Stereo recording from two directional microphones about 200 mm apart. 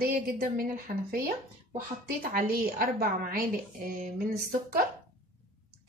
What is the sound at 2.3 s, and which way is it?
A woman's voice, 45° right (ahead or behind).